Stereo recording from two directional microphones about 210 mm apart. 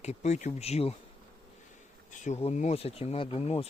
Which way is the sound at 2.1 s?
35° left (ahead or behind).